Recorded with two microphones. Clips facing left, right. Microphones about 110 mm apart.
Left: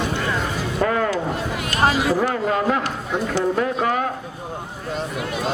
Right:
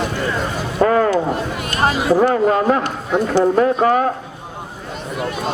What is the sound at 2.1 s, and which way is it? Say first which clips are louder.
A man's voice: right 6 dB; 45° right (ahead or behind).